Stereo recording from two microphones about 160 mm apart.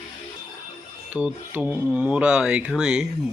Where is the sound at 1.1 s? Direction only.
10° right (ahead or behind).